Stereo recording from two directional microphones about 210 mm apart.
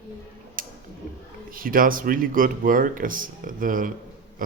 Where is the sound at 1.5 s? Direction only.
40° right (ahead or behind).